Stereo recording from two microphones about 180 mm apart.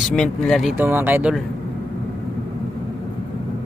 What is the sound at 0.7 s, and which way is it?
Speech, 10° right (ahead or behind).